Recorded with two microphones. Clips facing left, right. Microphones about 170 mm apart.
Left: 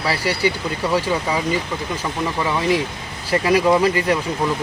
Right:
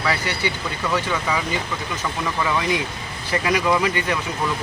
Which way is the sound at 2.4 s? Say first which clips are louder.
Left 3 dB; 30° left (ahead or behind).